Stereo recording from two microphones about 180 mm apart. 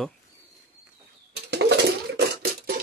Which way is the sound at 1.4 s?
70° right (ahead or behind).